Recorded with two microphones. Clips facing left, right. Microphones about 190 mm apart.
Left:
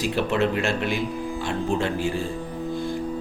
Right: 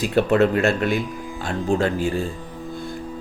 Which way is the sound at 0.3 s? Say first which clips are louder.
Right 6 dB; 45° right (ahead or behind).